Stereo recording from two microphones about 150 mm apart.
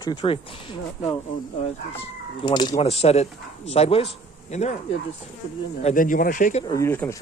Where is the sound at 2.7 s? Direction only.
45° left (ahead or behind).